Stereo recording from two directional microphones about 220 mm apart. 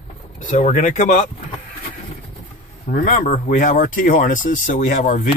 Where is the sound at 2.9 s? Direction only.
40° left (ahead or behind).